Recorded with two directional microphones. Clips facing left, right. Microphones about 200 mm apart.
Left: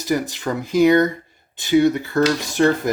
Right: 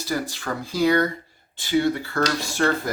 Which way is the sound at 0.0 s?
20° left (ahead or behind).